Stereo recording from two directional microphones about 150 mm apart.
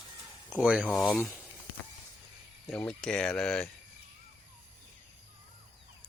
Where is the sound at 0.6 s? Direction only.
5° right (ahead or behind).